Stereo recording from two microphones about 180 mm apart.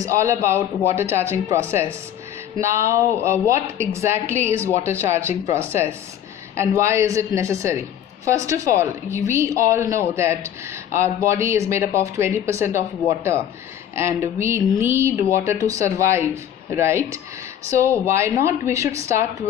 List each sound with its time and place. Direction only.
0.0 s a woman's voice: 15° right (ahead or behind)